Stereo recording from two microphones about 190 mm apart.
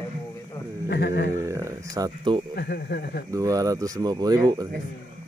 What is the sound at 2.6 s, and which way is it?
Speech, 55° left (ahead or behind).